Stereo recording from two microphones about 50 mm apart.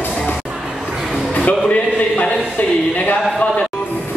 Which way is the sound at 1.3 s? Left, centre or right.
Left.